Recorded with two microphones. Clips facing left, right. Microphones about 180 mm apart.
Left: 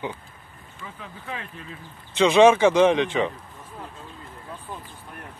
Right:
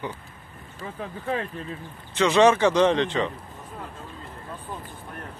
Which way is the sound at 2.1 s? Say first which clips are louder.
Left 3 dB; 15° left (ahead or behind).